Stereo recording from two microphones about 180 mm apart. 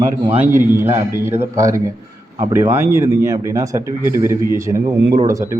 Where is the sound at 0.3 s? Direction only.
10° right (ahead or behind).